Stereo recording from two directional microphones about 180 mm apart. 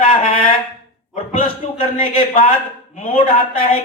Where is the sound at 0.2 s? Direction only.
50° left (ahead or behind).